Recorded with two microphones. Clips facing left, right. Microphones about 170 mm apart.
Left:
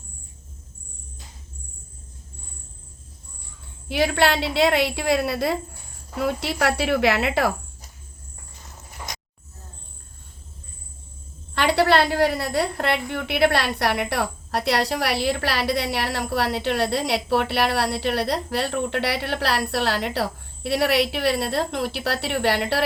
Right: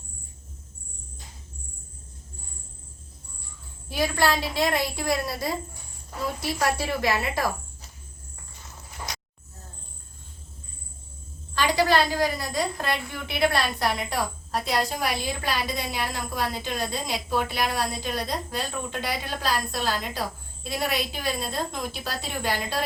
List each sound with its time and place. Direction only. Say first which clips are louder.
3.8 s a woman's voice: left 4 dB; 65° left (ahead or behind)
11.5 s a woman's voice: left 3 dB; 65° left (ahead or behind)